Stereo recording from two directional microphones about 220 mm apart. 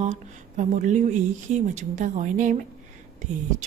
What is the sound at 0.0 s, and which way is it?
Speech, 35° right (ahead or behind).